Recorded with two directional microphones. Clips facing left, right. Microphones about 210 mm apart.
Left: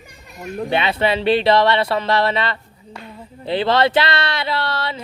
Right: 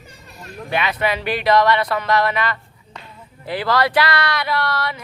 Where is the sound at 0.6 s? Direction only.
30° left (ahead or behind).